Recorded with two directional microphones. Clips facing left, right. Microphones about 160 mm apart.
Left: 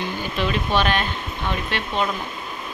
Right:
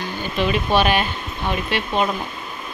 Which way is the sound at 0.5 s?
10° right (ahead or behind).